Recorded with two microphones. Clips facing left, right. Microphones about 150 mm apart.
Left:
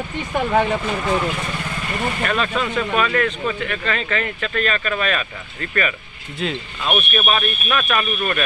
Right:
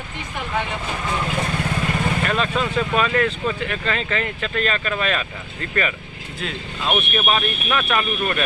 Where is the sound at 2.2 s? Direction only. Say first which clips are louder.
Even; 30° right (ahead or behind).